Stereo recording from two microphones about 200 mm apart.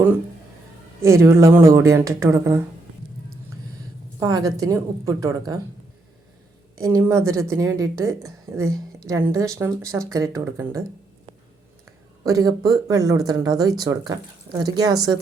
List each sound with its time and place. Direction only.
1.0 s a woman's voice: 15° right (ahead or behind)
4.2 s a woman's voice: 20° right (ahead or behind)
6.7 s a woman's voice: 15° right (ahead or behind)
12.2 s speech: 15° right (ahead or behind)